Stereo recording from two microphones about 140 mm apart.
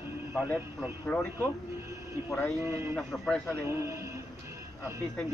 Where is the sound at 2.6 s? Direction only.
20° right (ahead or behind).